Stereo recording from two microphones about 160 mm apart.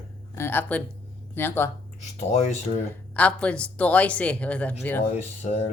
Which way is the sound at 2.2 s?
45° left (ahead or behind).